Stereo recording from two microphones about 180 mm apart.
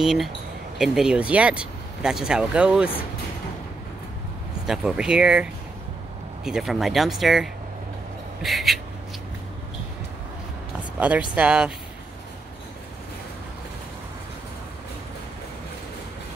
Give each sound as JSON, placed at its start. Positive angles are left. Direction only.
{"t": 0.0, "sound": "speech", "side_deg": 0}
{"t": 4.6, "sound": "speech", "side_deg": -5}
{"t": 11.0, "sound": "speech", "side_deg": -5}